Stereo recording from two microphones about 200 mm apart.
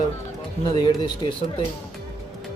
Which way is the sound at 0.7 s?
20° left (ahead or behind).